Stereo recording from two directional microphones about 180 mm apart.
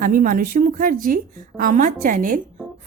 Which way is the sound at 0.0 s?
50° right (ahead or behind).